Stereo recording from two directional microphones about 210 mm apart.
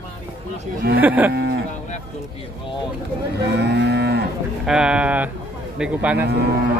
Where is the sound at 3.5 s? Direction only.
50° right (ahead or behind).